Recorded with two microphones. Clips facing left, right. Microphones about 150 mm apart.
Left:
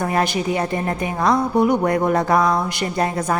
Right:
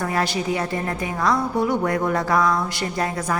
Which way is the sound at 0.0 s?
20° left (ahead or behind).